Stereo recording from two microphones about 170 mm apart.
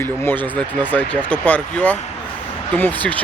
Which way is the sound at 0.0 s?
10° left (ahead or behind).